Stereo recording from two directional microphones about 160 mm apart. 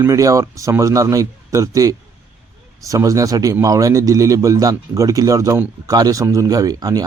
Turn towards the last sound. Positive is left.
turn(degrees=-25)  # may be behind; listen again after turning